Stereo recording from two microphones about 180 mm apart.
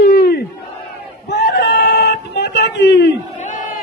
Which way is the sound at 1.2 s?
70° left (ahead or behind).